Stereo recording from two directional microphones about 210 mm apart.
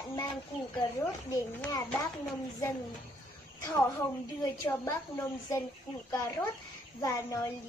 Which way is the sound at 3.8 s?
15° left (ahead or behind).